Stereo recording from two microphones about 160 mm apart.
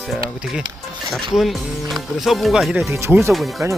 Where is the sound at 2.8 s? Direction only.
15° right (ahead or behind).